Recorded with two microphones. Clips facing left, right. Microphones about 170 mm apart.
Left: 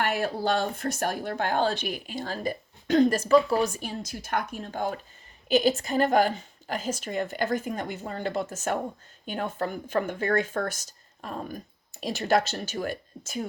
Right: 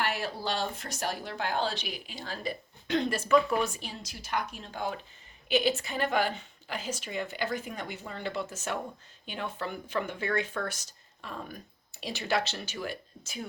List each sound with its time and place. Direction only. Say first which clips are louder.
0.0 s speech: left 6 dB; 50° left (ahead or behind)